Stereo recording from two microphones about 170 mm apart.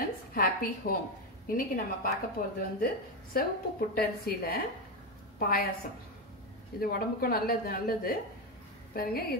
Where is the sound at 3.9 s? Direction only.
65° left (ahead or behind).